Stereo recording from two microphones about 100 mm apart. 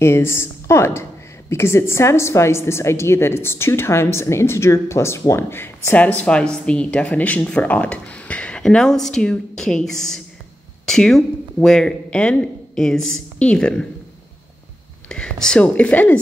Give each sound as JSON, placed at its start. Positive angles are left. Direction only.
{"t": 0.0, "sound": "a woman's voice", "side_deg": 25}
{"t": 6.2, "sound": "speech", "side_deg": 10}
{"t": 15.0, "sound": "speech", "side_deg": 10}